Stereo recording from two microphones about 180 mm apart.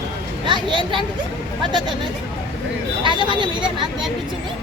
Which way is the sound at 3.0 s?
25° right (ahead or behind).